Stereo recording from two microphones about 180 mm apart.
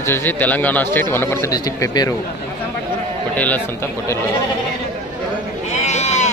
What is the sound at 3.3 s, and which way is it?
Speech, 10° left (ahead or behind).